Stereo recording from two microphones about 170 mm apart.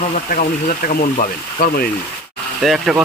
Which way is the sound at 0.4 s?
50° left (ahead or behind).